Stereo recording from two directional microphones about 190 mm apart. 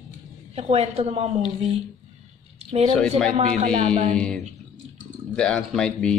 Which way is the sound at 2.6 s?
35° right (ahead or behind).